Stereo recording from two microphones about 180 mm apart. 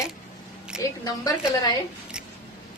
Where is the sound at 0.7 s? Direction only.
5° right (ahead or behind).